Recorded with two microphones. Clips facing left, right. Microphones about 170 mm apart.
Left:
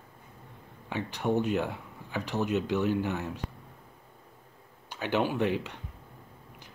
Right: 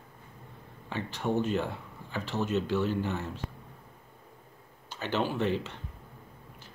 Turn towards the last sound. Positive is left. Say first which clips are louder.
# left 1 dB
turn(degrees=15)  # may be behind; listen again after turning